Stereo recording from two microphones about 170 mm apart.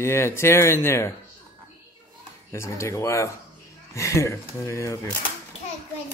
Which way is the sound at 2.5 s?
15° left (ahead or behind).